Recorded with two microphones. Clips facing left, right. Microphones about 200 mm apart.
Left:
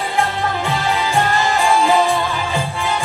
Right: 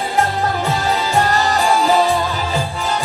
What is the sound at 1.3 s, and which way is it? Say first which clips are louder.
Music: even; 40° right (ahead or behind).